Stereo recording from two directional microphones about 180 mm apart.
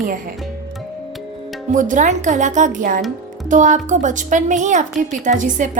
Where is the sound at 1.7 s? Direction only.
45° right (ahead or behind).